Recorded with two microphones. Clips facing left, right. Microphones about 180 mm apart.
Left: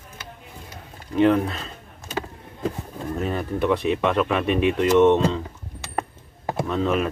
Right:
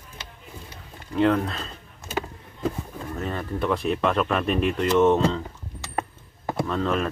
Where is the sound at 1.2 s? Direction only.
10° left (ahead or behind).